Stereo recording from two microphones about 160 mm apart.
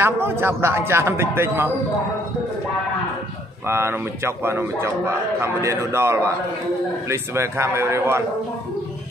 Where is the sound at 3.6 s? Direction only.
15° right (ahead or behind).